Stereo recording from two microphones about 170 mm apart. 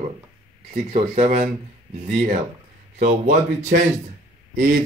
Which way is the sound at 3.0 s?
45° right (ahead or behind).